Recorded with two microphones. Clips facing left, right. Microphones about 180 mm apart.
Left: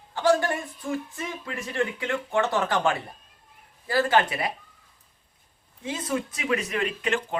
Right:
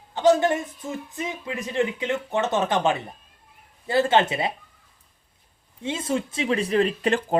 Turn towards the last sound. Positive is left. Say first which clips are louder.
# right 4 dB
turn(degrees=-35)  # may be behind; listen again after turning